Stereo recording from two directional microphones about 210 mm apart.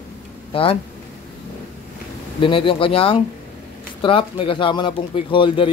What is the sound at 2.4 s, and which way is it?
Speech, 25° left (ahead or behind).